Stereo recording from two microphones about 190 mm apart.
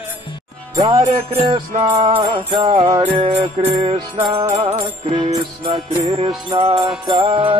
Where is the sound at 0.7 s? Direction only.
25° right (ahead or behind).